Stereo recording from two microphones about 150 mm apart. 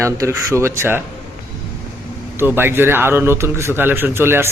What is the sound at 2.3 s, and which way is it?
Speech, 15° right (ahead or behind).